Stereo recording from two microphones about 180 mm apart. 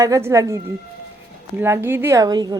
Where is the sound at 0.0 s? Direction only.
15° right (ahead or behind).